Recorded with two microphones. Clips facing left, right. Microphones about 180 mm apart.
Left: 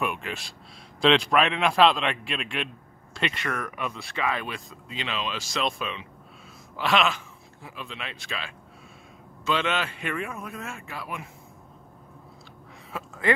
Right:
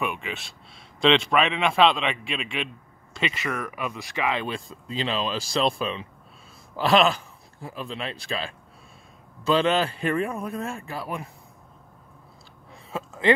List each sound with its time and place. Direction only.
0.0 s a man's voice: centre (ahead or behind)
4.0 s speech: 15° right (ahead or behind); by 11.2 s 35° right (ahead or behind)
12.9 s a man's voice: 25° right (ahead or behind)